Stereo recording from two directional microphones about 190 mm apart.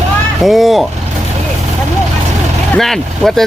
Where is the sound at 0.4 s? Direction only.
Centre (ahead or behind).